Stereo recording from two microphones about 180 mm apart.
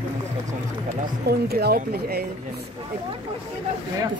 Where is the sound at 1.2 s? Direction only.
60° right (ahead or behind).